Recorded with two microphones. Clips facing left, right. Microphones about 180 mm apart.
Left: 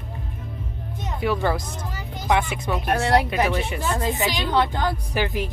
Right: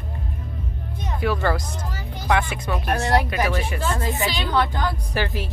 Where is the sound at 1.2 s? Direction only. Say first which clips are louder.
Even; centre (ahead or behind).